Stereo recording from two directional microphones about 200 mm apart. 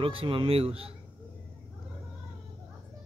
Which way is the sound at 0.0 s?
25° right (ahead or behind).